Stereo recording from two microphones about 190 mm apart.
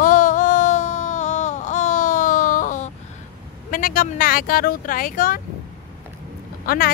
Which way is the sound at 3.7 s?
45° left (ahead or behind).